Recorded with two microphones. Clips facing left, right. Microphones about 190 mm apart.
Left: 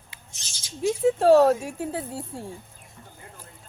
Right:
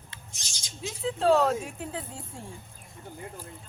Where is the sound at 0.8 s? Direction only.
50° left (ahead or behind).